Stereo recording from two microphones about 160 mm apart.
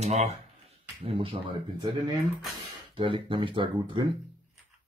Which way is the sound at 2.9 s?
35° right (ahead or behind).